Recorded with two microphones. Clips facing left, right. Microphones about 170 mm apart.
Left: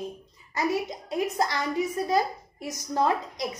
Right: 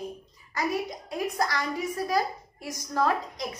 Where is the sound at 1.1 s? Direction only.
25° left (ahead or behind).